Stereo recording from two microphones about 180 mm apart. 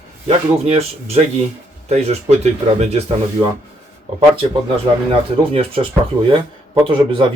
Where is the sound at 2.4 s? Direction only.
35° right (ahead or behind).